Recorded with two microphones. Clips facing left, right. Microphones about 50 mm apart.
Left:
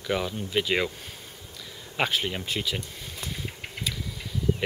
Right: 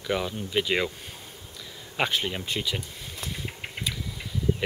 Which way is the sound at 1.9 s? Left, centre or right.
Centre.